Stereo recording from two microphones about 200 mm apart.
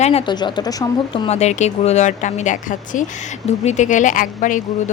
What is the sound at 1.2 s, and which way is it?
A woman's voice, 35° left (ahead or behind).